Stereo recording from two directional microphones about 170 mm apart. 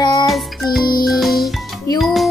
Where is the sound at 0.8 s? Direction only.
60° left (ahead or behind).